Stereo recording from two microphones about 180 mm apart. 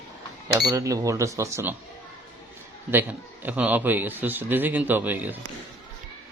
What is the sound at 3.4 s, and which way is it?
Speech, 10° right (ahead or behind).